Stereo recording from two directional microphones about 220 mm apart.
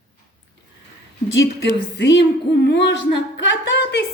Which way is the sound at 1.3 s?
55° left (ahead or behind).